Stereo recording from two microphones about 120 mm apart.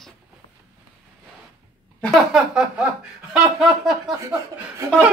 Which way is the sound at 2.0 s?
Centre (ahead or behind).